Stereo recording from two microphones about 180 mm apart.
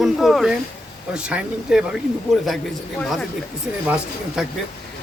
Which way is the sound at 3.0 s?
Centre (ahead or behind).